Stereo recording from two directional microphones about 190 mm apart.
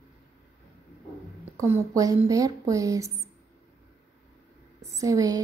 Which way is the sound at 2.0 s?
15° right (ahead or behind).